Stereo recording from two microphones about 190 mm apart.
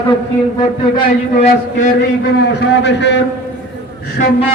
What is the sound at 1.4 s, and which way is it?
Speech, 40° left (ahead or behind).